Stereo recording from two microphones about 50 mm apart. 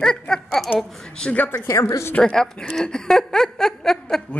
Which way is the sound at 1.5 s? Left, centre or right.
Left.